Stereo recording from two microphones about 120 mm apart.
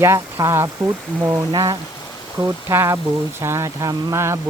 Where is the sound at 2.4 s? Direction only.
20° right (ahead or behind).